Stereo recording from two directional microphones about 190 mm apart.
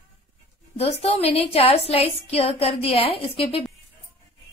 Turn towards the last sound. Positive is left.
turn(degrees=30)  # may be behind; listen again after turning